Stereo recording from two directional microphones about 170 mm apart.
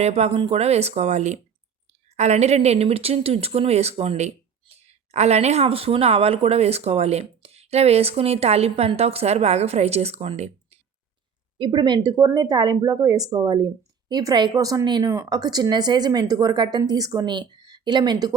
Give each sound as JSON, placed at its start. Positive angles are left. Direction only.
{"t": 0.0, "sound": "speech", "side_deg": -40}
{"t": 11.5, "sound": "speech", "side_deg": -25}